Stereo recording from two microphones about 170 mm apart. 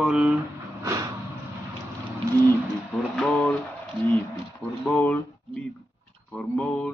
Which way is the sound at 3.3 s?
10° left (ahead or behind).